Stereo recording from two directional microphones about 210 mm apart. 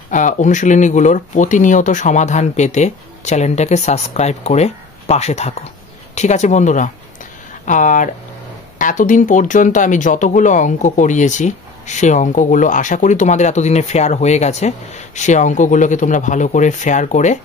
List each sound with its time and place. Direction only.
0.1 s speech: 35° left (ahead or behind)